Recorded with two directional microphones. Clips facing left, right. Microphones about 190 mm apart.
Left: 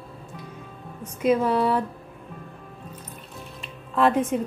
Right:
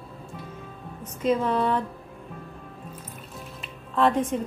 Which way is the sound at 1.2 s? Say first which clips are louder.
Left 3 dB; 10° left (ahead or behind).